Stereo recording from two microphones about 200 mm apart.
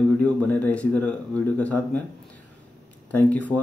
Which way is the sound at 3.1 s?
10° left (ahead or behind).